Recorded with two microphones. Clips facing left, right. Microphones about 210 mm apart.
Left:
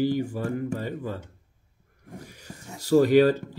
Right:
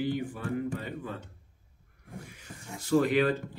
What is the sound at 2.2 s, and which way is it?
Speech, 40° left (ahead or behind).